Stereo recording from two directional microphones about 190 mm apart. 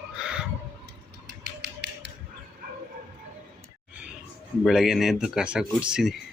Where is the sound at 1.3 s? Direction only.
60° right (ahead or behind).